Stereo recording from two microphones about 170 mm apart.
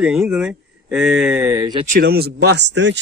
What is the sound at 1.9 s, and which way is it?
A man's voice, 65° right (ahead or behind).